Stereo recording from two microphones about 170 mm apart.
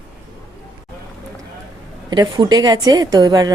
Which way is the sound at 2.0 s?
25° right (ahead or behind).